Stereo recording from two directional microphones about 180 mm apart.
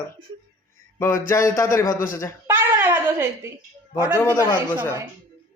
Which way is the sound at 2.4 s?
15° right (ahead or behind).